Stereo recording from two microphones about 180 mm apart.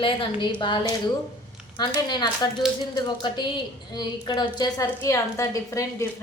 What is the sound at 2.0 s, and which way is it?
A woman's voice, 25° left (ahead or behind).